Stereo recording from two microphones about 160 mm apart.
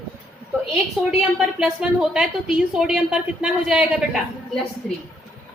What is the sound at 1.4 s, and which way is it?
A woman's voice, 5° right (ahead or behind).